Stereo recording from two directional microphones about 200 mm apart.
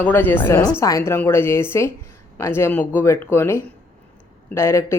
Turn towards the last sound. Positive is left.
turn(degrees=15)  # may be behind; listen again after turning